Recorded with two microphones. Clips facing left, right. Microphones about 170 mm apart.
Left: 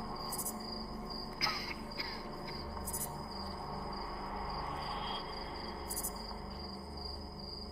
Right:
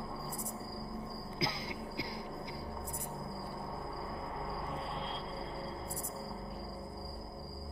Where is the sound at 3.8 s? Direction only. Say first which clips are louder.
Right 2 dB; centre (ahead or behind).